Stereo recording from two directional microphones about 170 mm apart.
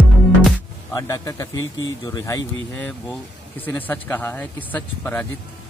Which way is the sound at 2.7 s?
10° left (ahead or behind).